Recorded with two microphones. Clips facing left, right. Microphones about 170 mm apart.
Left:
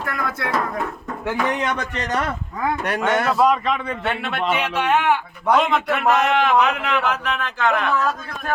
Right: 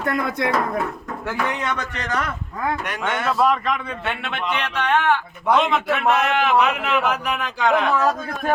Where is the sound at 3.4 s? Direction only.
10° left (ahead or behind).